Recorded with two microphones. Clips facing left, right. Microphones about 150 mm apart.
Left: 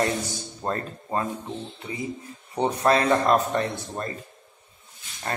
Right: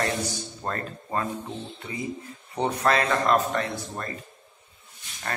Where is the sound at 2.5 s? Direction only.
20° left (ahead or behind).